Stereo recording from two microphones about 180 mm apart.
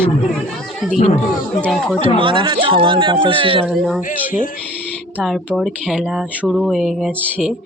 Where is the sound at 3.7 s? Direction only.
Centre (ahead or behind).